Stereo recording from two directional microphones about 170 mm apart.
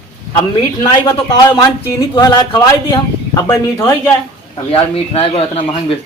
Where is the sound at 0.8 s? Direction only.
25° left (ahead or behind).